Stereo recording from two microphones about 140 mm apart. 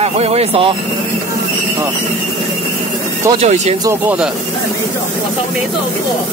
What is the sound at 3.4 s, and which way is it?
Speech, 55° right (ahead or behind).